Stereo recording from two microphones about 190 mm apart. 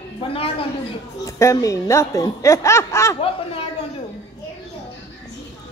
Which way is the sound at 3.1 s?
30° left (ahead or behind).